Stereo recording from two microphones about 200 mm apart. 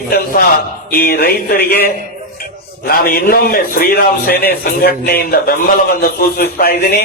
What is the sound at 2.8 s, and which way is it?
A man's voice, 45° left (ahead or behind).